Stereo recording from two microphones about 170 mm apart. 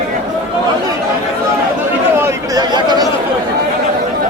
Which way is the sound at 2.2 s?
25° right (ahead or behind).